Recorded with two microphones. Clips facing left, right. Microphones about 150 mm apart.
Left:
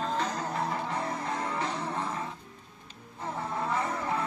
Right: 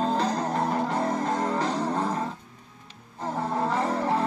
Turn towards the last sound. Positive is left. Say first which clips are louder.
# right 6 dB
turn(degrees=-30)  # may be behind; listen again after turning